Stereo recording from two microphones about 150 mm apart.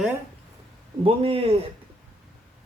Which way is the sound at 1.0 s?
40° right (ahead or behind).